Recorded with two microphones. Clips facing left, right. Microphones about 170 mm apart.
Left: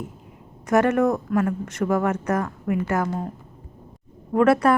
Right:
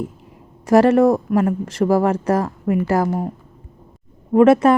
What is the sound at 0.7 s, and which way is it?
A woman's voice, 30° right (ahead or behind).